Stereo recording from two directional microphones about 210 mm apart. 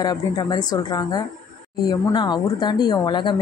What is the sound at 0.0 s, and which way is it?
A woman's voice, 20° left (ahead or behind).